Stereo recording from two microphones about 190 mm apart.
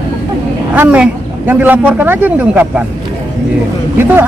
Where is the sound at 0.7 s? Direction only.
5° right (ahead or behind).